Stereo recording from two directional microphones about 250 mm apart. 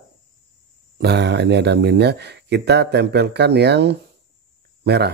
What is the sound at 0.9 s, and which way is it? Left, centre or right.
Speech, right.